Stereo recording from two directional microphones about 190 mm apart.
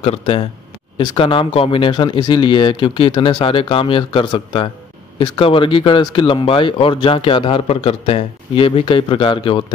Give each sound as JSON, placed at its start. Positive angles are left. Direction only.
{"t": 0.0, "sound": "speech", "side_deg": 30}